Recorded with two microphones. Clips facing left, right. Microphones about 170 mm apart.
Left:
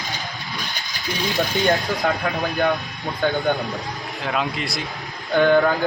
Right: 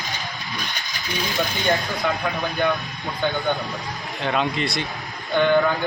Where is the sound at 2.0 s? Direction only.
50° left (ahead or behind).